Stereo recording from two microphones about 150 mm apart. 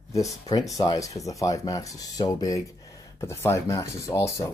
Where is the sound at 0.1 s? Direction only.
25° left (ahead or behind).